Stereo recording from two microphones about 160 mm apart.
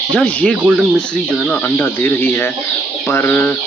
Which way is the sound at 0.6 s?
5° right (ahead or behind).